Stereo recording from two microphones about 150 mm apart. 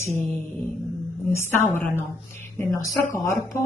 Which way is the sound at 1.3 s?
15° left (ahead or behind).